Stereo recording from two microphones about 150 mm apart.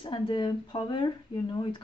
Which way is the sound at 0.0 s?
35° left (ahead or behind).